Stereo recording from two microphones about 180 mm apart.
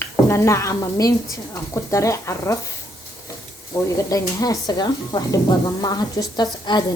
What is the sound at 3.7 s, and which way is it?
A woman's voice, 20° left (ahead or behind).